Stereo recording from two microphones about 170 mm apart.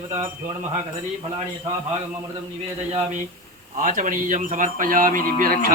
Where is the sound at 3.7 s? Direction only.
50° right (ahead or behind).